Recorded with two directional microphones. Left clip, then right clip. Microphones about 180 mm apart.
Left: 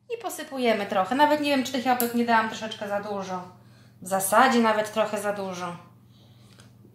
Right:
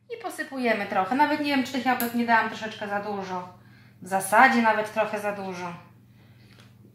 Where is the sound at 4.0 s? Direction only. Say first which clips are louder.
Right 2 dB; 40° left (ahead or behind).